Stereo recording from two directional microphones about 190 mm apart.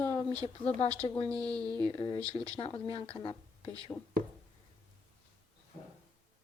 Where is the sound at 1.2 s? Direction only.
5° left (ahead or behind).